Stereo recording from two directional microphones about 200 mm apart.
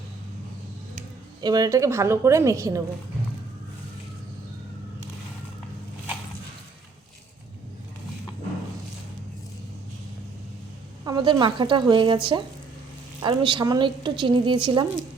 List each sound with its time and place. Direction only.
1.4 s a woman's voice: 20° right (ahead or behind)
11.0 s a woman's voice: 20° right (ahead or behind)